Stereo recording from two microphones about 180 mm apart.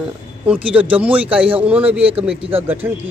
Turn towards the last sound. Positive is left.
turn(degrees=-10)  # may be behind; listen again after turning